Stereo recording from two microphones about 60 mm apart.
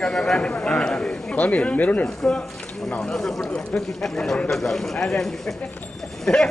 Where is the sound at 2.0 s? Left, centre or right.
Centre.